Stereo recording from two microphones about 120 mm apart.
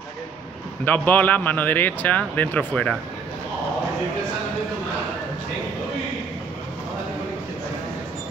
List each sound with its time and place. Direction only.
0.8 s speech: 15° left (ahead or behind)